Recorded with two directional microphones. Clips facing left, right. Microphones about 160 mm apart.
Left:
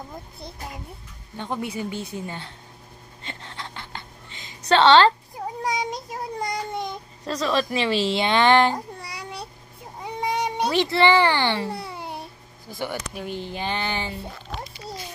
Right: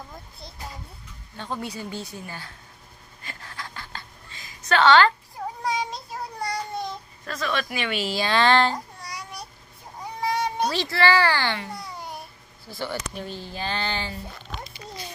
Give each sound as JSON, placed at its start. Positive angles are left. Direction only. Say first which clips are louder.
{"t": 1.3, "sound": "a woman's voice", "louder": "left 3 dB", "side_deg": 20}
{"t": 3.3, "sound": "a sound", "louder": "left 2 dB", "side_deg": 25}
{"t": 5.6, "sound": "child singing", "louder": "left 1 dB", "side_deg": 15}
{"t": 6.4, "sound": "a sound", "louder": "even", "side_deg": 20}
{"t": 7.3, "sound": "a woman's voice", "louder": "left 5 dB", "side_deg": 30}
{"t": 8.7, "sound": "babbling", "louder": "left 2 dB", "side_deg": 30}
{"t": 10.2, "sound": "a child's voice", "louder": "even", "side_deg": 20}
{"t": 11.5, "sound": "speech", "louder": "left 5 dB", "side_deg": 30}